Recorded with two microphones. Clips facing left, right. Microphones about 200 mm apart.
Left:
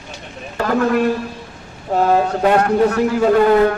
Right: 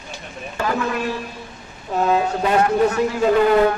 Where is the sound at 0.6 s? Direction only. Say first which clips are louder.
Left 7 dB; 55° left (ahead or behind).